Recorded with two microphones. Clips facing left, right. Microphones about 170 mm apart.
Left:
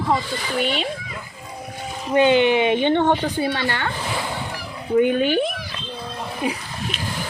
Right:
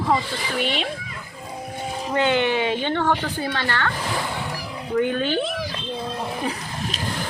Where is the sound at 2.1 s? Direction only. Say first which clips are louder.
Left 5 dB; 15° left (ahead or behind).